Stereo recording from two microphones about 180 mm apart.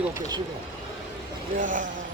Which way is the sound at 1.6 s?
45° right (ahead or behind).